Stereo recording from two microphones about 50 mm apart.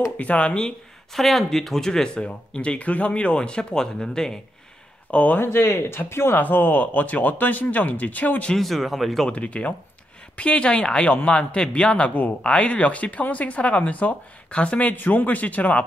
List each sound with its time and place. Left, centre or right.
0.2 s speech: left
1.1 s speech: centre
5.1 s speech: left
5.4 s speech: left
6.4 s speech: left
8.5 s speech: centre
9.3 s speech: left
12.1 s speech: left
12.4 s speech: left
15.0 s speech: left